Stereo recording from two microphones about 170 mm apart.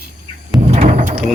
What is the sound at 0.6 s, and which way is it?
Mechanisms, 40° right (ahead or behind).